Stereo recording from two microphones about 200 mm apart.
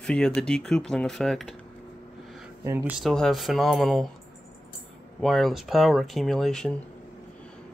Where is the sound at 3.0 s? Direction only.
Centre (ahead or behind).